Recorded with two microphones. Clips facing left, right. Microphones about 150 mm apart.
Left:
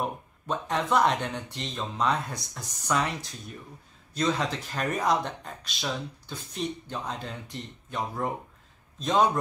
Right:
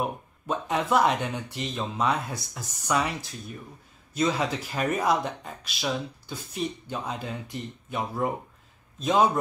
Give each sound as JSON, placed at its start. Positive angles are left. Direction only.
{"t": 0.0, "sound": "speech", "side_deg": -5}